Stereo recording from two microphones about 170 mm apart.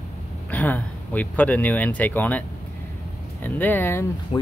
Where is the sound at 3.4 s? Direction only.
10° left (ahead or behind).